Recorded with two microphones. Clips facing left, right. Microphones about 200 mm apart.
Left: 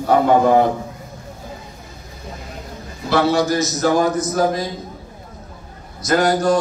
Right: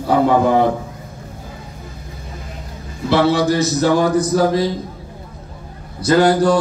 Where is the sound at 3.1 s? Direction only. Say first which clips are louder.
Right 2 dB; 30° right (ahead or behind).